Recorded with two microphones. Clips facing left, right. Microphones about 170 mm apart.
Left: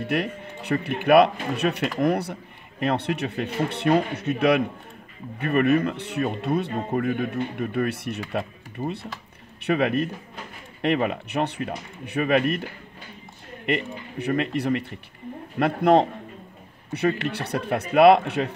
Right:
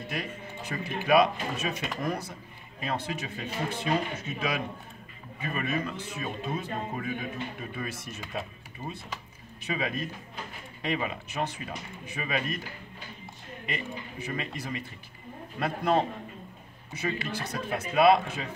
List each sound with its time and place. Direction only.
0.0 s speech: 65° left (ahead or behind)
13.7 s speech: 65° left (ahead or behind)